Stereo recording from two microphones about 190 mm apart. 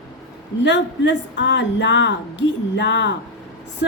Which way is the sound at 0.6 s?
65° left (ahead or behind).